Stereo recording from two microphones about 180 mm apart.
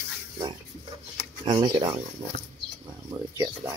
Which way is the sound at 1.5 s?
25° right (ahead or behind).